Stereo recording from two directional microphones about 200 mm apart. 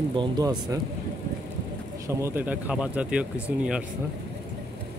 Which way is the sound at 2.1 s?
15° right (ahead or behind).